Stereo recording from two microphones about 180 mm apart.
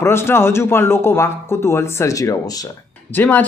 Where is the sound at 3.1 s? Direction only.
10° left (ahead or behind).